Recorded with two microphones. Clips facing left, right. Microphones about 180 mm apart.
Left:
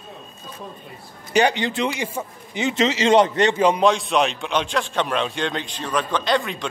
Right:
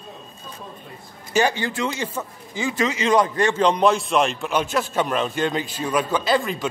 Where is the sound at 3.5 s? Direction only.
10° left (ahead or behind).